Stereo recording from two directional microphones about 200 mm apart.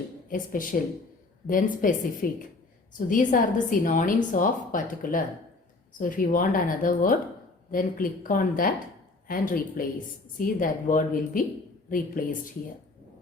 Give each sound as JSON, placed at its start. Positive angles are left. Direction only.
{"t": 0.3, "sound": "a woman's voice", "side_deg": 40}